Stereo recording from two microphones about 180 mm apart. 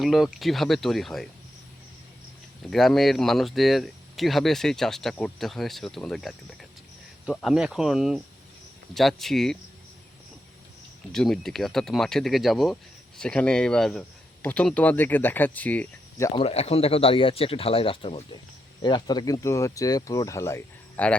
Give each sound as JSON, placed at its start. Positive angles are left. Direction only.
{"t": 0.0, "sound": "speech", "side_deg": 0}
{"t": 2.6, "sound": "speech", "side_deg": 0}
{"t": 11.1, "sound": "speech", "side_deg": 0}
{"t": 16.3, "sound": "speech", "side_deg": 30}